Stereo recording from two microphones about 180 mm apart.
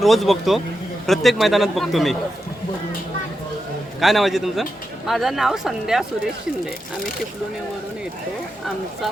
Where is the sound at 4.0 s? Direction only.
Centre (ahead or behind).